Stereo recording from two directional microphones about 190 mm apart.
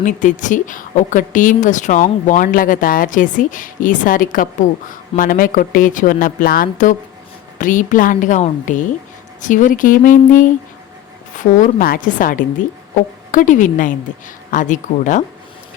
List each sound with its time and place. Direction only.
0.0 s a woman's voice: 40° left (ahead or behind)